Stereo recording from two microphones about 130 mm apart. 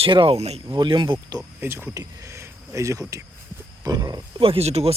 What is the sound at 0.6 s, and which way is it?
Speech, 35° right (ahead or behind).